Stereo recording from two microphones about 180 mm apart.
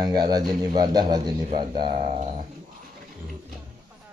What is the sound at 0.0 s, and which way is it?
Speech, 20° right (ahead or behind).